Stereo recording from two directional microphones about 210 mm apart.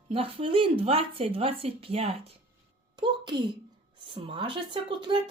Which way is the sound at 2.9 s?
20° right (ahead or behind).